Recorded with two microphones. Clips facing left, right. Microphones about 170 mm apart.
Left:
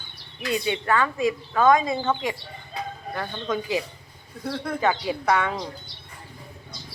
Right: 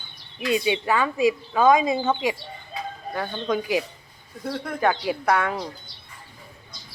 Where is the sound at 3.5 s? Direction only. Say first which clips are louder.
Right 2 dB; 15° right (ahead or behind).